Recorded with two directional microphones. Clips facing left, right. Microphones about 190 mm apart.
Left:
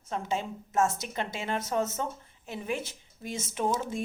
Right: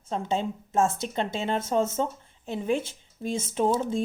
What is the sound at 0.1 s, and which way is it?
Speech, 25° right (ahead or behind).